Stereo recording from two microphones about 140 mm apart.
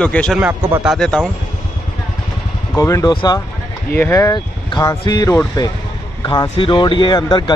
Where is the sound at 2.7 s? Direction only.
25° left (ahead or behind).